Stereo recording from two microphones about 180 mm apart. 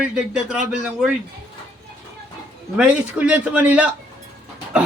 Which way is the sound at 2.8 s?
5° right (ahead or behind).